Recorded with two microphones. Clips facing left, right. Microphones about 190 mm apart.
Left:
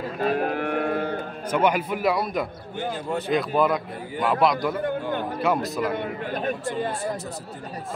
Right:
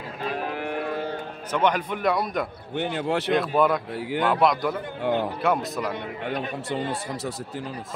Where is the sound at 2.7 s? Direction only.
70° right (ahead or behind); by 3.3 s 90° right.